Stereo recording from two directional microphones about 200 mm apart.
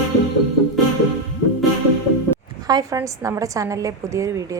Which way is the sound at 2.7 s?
15° right (ahead or behind).